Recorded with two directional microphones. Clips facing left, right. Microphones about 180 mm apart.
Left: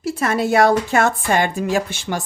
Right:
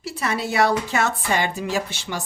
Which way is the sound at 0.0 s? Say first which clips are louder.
Left 6 dB; 50° left (ahead or behind).